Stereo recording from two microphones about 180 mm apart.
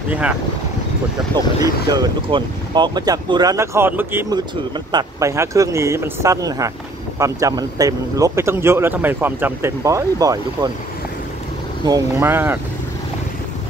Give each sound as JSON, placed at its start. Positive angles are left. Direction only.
{"t": 1.3, "sound": "speech", "side_deg": -25}
{"t": 11.8, "sound": "speech", "side_deg": -20}